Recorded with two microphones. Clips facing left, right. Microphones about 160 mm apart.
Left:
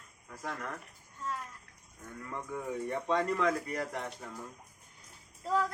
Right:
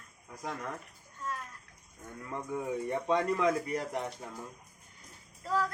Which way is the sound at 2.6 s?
10° right (ahead or behind).